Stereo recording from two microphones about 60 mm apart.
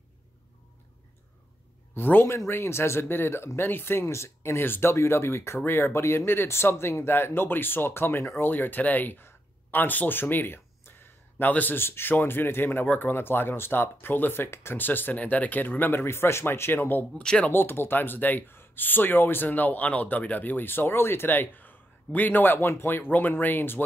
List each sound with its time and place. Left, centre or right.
2.0 s speech: left
2.3 s speech: left
12.8 s speech: left
13.1 s speech: left
14.8 s speech: left
17.2 s speech: centre
17.5 s speech: left